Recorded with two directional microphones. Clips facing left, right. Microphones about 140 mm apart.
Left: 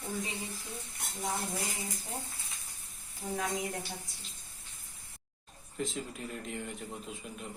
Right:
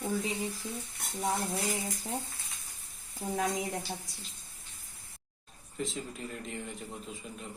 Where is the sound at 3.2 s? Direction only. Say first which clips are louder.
Right 2 dB; 45° right (ahead or behind).